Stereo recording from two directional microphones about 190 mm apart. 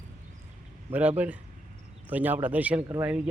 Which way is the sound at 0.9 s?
10° right (ahead or behind).